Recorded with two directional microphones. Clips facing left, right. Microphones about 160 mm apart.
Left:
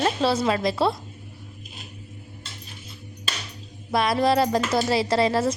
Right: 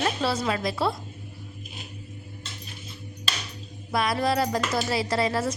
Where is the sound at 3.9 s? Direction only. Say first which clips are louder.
Left 4 dB; 25° left (ahead or behind).